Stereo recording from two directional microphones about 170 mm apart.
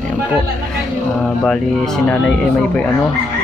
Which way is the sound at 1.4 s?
5° left (ahead or behind).